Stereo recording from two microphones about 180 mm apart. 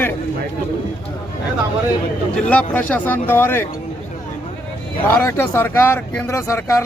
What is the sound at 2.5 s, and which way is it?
Speech, 10° left (ahead or behind).